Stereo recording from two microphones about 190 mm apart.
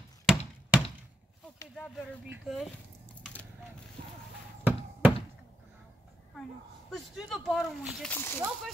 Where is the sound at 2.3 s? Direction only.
Centre (ahead or behind).